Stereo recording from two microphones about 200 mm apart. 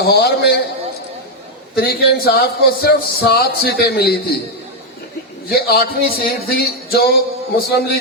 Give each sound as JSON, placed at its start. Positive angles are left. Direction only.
{"t": 0.0, "sound": "speech", "side_deg": 55}
{"t": 1.7, "sound": "speech", "side_deg": 50}
{"t": 5.5, "sound": "speech", "side_deg": 50}